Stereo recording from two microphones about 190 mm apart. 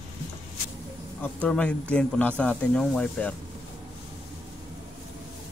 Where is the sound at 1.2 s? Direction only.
5° left (ahead or behind).